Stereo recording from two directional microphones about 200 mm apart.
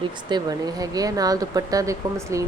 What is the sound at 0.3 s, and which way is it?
Speech, 20° right (ahead or behind).